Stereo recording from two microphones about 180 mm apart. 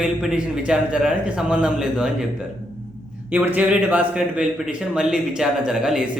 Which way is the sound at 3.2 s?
10° right (ahead or behind).